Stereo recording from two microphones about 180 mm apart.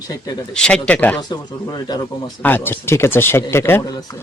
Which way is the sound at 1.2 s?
25° left (ahead or behind).